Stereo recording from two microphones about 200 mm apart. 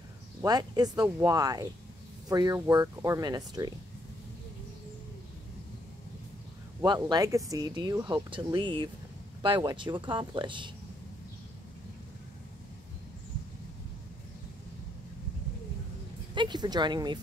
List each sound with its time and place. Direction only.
0.4 s speech: 20° right (ahead or behind)
6.8 s speech: 20° right (ahead or behind)
16.3 s speech: 20° right (ahead or behind)